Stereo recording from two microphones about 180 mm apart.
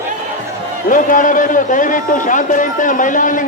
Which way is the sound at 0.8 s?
45° left (ahead or behind).